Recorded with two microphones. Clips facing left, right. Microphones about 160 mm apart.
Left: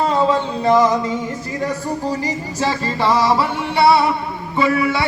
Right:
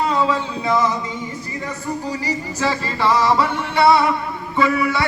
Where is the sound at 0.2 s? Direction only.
30° left (ahead or behind).